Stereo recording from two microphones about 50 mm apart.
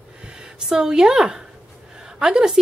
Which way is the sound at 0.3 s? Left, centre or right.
Centre.